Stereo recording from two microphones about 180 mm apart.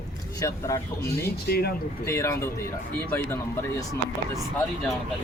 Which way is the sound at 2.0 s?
15° left (ahead or behind).